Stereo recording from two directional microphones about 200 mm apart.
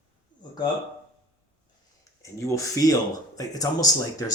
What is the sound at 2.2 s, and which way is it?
Speech, 15° left (ahead or behind).